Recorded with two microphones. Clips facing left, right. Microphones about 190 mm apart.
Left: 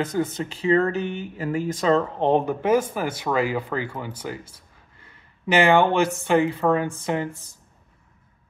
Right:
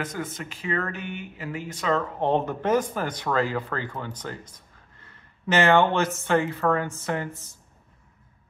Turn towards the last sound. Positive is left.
turn(degrees=15)  # may be behind; listen again after turning